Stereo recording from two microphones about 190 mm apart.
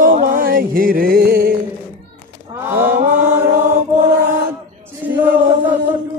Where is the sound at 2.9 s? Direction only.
45° right (ahead or behind).